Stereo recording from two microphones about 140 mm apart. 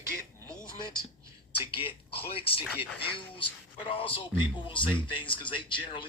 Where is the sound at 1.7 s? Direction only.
40° left (ahead or behind).